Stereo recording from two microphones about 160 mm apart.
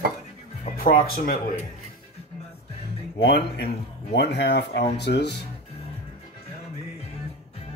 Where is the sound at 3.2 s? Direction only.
90° left.